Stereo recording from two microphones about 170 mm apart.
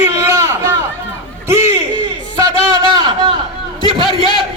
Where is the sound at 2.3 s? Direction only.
25° right (ahead or behind).